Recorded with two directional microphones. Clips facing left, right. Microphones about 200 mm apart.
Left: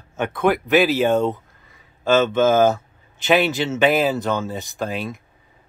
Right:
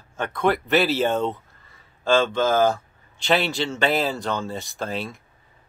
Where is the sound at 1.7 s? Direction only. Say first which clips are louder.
Left 2 dB; 20° left (ahead or behind).